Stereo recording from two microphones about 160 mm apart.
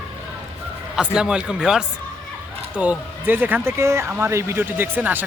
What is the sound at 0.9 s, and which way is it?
Speech, 5° right (ahead or behind).